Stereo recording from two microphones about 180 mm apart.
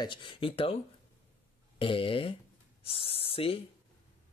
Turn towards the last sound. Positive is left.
turn(degrees=30)  # may be behind; listen again after turning